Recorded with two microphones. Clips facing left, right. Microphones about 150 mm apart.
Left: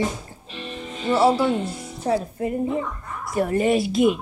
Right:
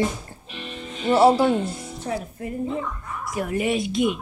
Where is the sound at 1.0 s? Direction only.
25° right (ahead or behind).